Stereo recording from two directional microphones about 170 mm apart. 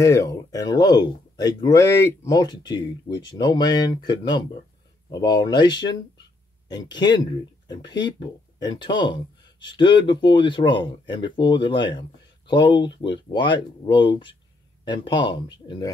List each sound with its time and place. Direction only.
0.0 s speech: 20° left (ahead or behind)